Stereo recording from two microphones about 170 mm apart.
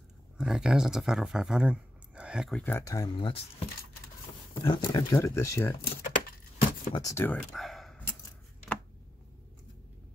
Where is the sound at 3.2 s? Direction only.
35° left (ahead or behind); by 5.8 s 20° left (ahead or behind).